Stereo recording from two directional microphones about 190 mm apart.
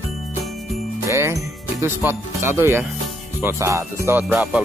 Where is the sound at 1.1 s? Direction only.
15° right (ahead or behind).